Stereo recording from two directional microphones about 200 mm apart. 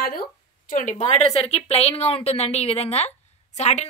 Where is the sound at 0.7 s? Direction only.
40° left (ahead or behind).